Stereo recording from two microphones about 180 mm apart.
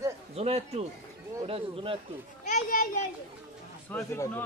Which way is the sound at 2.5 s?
45° left (ahead or behind).